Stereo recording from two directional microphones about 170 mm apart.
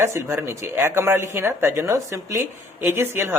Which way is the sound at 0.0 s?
15° right (ahead or behind).